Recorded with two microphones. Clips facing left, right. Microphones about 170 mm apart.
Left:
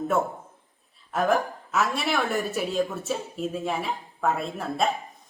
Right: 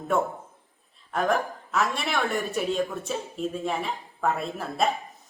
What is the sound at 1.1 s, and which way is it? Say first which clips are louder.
A woman's voice: left 2 dB; centre (ahead or behind).